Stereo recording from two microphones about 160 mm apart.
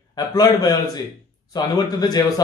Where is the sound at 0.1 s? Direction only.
25° left (ahead or behind).